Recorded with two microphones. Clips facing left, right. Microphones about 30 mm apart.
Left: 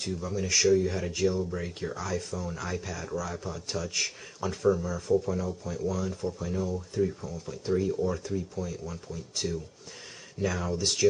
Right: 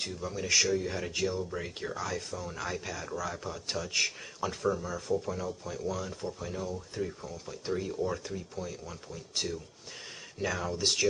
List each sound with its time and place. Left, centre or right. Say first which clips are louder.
0.1 s speech: left 2 dB; centre
10.4 s speech: left 2 dB; centre